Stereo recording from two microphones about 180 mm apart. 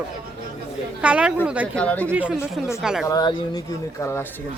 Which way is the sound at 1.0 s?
5° right (ahead or behind).